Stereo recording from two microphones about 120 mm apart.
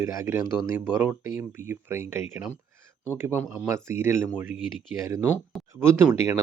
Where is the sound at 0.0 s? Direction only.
20° right (ahead or behind).